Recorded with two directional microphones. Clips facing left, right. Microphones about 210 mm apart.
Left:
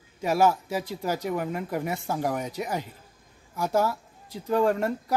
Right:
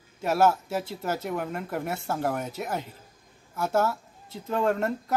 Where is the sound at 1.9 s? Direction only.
15° left (ahead or behind).